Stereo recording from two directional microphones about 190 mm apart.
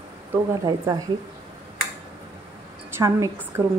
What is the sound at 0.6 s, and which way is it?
Speech, 20° right (ahead or behind).